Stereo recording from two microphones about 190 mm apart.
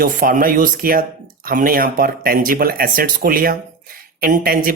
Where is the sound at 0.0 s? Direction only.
45° right (ahead or behind).